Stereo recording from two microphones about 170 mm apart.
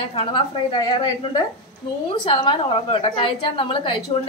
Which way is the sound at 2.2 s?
30° left (ahead or behind).